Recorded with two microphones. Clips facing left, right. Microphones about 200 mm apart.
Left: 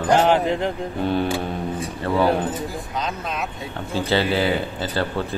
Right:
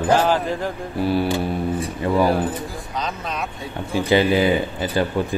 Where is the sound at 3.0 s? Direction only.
Centre (ahead or behind).